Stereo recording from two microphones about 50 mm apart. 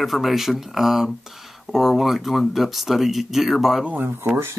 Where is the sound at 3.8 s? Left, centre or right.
Right.